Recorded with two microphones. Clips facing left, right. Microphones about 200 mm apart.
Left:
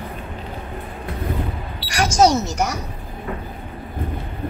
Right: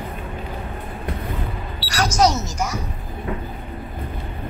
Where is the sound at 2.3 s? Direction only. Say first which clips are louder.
Left 4 dB; 65° left (ahead or behind).